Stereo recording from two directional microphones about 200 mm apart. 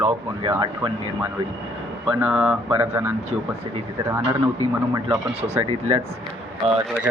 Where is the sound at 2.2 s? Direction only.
10° right (ahead or behind).